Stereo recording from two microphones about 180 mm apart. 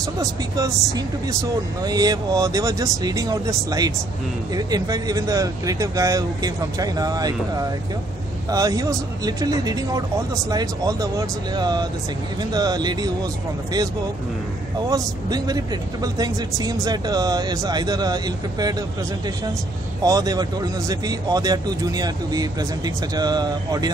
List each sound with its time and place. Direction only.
0.0 s speech: 20° right (ahead or behind)
14.9 s speech: 20° right (ahead or behind)